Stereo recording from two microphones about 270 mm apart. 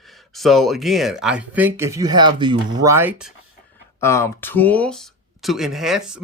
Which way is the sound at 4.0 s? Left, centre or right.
Centre.